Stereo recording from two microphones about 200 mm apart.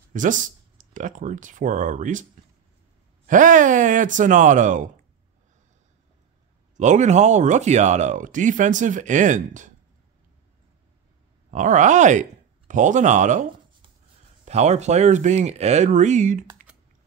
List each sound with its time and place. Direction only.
0.1 s speech: 40° right (ahead or behind)
3.3 s speech: 40° right (ahead or behind)
6.8 s speech: 35° right (ahead or behind)
11.5 s speech: 40° right (ahead or behind)